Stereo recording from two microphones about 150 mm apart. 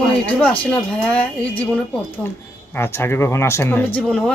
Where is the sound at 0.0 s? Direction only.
5° left (ahead or behind).